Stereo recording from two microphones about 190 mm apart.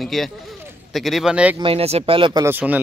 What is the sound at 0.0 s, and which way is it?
Speech, centre (ahead or behind).